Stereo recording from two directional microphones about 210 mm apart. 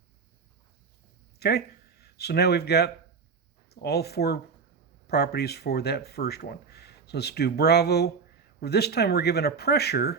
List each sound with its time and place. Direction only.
1.4 s speech: 50° left (ahead or behind)